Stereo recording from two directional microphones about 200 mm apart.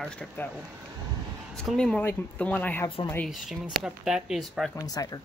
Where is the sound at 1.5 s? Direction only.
Centre (ahead or behind).